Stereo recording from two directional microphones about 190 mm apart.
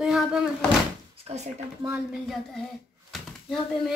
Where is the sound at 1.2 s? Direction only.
35° right (ahead or behind).